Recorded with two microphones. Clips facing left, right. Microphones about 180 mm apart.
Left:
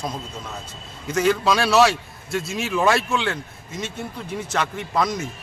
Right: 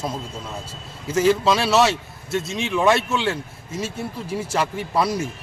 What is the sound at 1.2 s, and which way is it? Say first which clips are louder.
A man's voice: right 1 dB; centre (ahead or behind).